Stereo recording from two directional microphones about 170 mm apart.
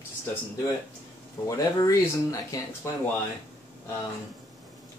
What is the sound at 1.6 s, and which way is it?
Speech, 20° left (ahead or behind).